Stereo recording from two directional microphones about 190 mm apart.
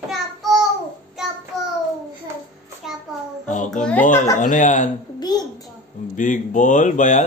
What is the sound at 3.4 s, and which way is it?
Music, 40° left (ahead or behind).